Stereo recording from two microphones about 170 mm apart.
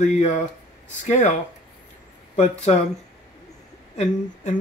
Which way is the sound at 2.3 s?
40° left (ahead or behind).